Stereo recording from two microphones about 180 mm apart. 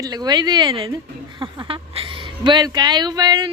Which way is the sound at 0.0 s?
20° right (ahead or behind).